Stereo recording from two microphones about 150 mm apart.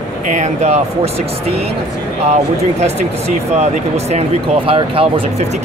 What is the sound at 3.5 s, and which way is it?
Speech, 45° right (ahead or behind).